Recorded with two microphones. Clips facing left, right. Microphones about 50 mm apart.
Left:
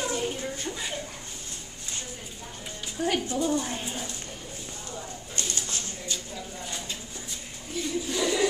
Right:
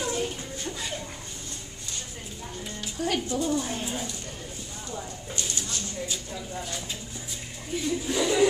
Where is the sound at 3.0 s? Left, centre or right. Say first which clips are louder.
Left 1 dB; left.